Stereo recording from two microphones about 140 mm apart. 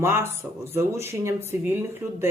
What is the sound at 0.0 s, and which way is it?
Speech, 20° right (ahead or behind).